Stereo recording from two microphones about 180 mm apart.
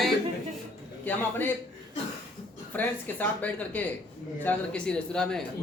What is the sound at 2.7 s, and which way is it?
A man's voice, 10° left (ahead or behind).